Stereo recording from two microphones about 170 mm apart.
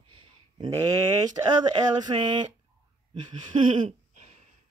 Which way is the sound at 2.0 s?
25° right (ahead or behind).